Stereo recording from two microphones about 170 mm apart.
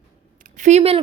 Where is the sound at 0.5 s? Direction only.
45° right (ahead or behind).